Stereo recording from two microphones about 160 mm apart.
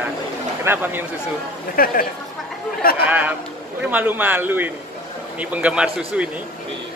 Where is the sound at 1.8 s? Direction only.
65° left (ahead or behind).